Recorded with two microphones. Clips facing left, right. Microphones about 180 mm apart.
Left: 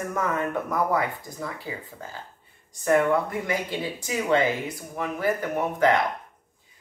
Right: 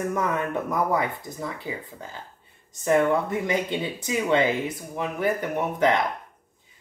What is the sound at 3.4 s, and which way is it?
Speech, 20° right (ahead or behind).